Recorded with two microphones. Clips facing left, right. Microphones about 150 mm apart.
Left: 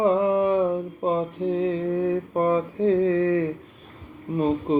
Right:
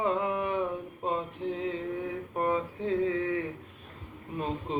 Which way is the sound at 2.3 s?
45° left (ahead or behind).